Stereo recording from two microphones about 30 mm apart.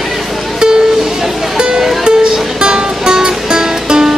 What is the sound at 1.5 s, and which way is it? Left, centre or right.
Music, right.